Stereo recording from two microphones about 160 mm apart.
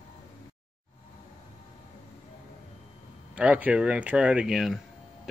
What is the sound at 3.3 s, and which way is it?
Speech, 10° right (ahead or behind).